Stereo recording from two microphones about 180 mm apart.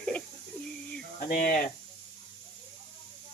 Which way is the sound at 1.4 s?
50° left (ahead or behind).